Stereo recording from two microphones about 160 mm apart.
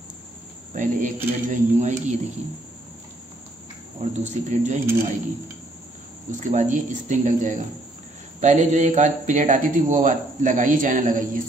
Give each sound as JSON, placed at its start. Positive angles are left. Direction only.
{"t": 0.7, "sound": "speech", "side_deg": -55}
{"t": 4.0, "sound": "speech", "side_deg": -45}
{"t": 6.4, "sound": "speech", "side_deg": -50}